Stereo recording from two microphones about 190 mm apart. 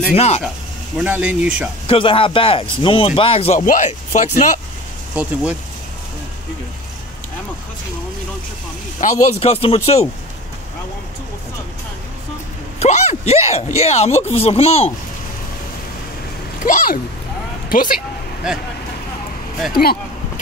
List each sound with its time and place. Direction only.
0.1 s speech: 35° left (ahead or behind)
0.9 s speech: 5° right (ahead or behind)
1.9 s speech: 30° left (ahead or behind)
5.1 s speech: 5° right (ahead or behind)
9.0 s speech: 30° left (ahead or behind)
12.7 s speech: 35° left (ahead or behind)
16.6 s a child's voice: 45° left (ahead or behind)